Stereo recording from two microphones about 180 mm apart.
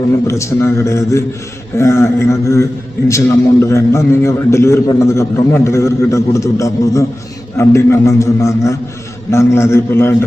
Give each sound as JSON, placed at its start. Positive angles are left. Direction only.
{"t": 0.3, "sound": "a man's voice", "side_deg": 15}